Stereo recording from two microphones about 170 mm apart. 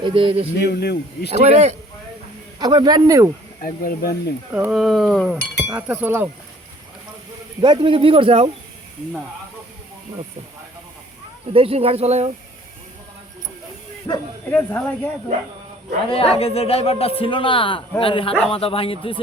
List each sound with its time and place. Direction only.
0.0 s speech: 30° right (ahead or behind)
0.5 s speech: 70° left (ahead or behind)
1.5 s speech: 40° right (ahead or behind)
2.6 s speech: 25° right (ahead or behind)
3.6 s speech: 55° left (ahead or behind)
4.5 s cutlery: 5° right (ahead or behind)
5.6 s speech: 10° right (ahead or behind)
7.6 s speech: 25° right (ahead or behind)
11.5 s speech: 35° right (ahead or behind)
14.1 s speech: 20° left (ahead or behind)
14.5 s speech: 10° left (ahead or behind)
16.0 s a man's voice: 35° left (ahead or behind)